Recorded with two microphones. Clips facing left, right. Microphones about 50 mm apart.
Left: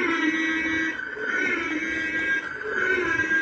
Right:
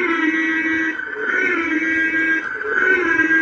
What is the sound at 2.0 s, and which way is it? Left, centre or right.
Music, right.